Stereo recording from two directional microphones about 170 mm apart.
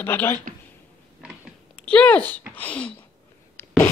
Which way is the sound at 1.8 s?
5° left (ahead or behind).